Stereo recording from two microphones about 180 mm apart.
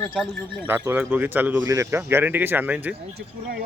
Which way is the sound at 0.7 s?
15° right (ahead or behind).